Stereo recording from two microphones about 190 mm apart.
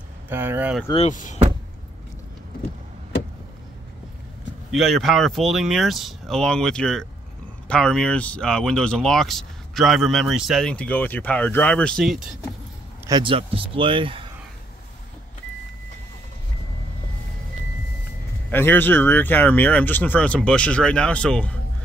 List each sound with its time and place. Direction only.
0.3 s speech: 10° right (ahead or behind)
0.9 s speech: 40° left (ahead or behind)
4.6 s speech: centre (ahead or behind)
13.0 s speech: 25° right (ahead or behind)
18.5 s speech: 10° left (ahead or behind)